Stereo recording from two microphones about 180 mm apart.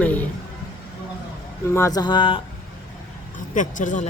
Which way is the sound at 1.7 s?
20° left (ahead or behind).